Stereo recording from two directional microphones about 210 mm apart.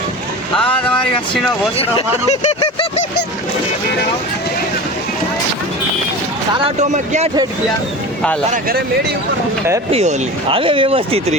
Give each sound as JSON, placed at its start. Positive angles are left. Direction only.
{"t": 1.8, "sound": "speech", "side_deg": 25}
{"t": 6.7, "sound": "speech", "side_deg": -30}
{"t": 9.9, "sound": "speech", "side_deg": -30}